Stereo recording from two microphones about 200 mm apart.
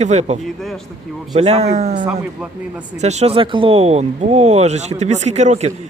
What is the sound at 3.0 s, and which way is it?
Speech, 35° right (ahead or behind).